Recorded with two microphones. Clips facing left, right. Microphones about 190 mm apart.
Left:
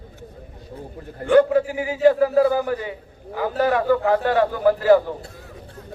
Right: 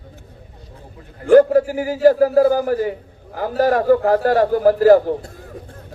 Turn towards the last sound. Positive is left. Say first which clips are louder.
# right 4 dB
turn(degrees=-45)  # may be behind; listen again after turning